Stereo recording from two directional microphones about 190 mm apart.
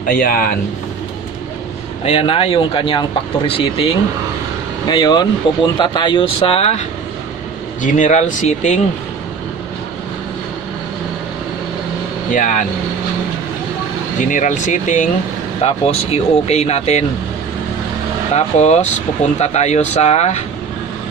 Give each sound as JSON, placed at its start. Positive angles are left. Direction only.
{"t": 0.0, "sound": "speech", "side_deg": 45}
{"t": 2.0, "sound": "speech", "side_deg": 30}
{"t": 7.8, "sound": "speech", "side_deg": 40}
{"t": 12.3, "sound": "speech", "side_deg": 40}
{"t": 14.2, "sound": "speech", "side_deg": 40}
{"t": 18.3, "sound": "speech", "side_deg": 35}